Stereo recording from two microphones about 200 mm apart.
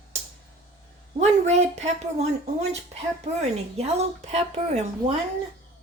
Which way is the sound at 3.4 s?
35° right (ahead or behind).